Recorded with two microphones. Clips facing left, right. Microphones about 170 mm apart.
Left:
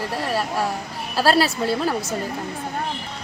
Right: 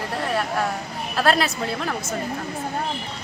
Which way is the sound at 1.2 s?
30° left (ahead or behind).